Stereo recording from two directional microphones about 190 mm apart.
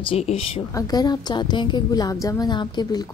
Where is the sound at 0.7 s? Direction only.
20° left (ahead or behind).